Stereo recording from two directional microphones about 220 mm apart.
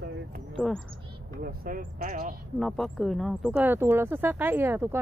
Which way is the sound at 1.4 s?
40° right (ahead or behind).